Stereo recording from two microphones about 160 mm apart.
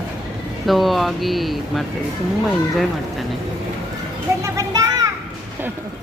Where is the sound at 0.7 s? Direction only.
Centre (ahead or behind).